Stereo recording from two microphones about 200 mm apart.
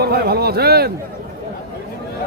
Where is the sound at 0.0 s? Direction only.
50° right (ahead or behind).